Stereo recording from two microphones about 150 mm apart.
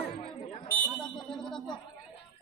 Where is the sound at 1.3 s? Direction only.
5° left (ahead or behind).